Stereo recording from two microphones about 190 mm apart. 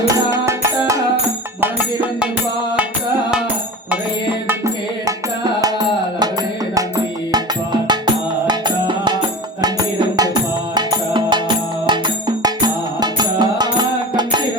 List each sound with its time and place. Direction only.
0.1 s music: 15° right (ahead or behind)
4.4 s music: 15° right (ahead or behind)
7.3 s music: 20° right (ahead or behind)
10.8 s music: 25° right (ahead or behind)